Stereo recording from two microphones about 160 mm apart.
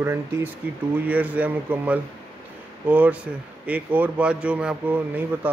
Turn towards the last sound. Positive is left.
turn(degrees=-10)  # may be behind; listen again after turning